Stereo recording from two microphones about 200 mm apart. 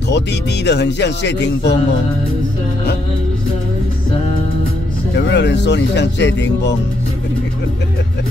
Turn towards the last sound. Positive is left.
turn(degrees=60)  # may be behind; listen again after turning